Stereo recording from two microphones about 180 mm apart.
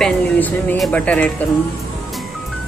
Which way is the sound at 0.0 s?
5° left (ahead or behind).